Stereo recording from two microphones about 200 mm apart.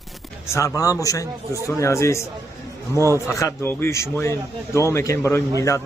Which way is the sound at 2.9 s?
15° right (ahead or behind).